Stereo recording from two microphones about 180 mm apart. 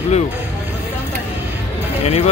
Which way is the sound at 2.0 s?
35° left (ahead or behind).